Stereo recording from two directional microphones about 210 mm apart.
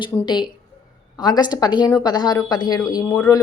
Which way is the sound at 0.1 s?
15° left (ahead or behind).